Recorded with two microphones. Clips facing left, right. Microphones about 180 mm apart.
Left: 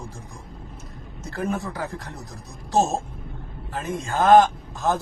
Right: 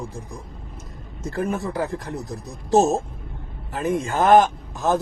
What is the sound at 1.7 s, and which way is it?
A man's voice, 15° right (ahead or behind).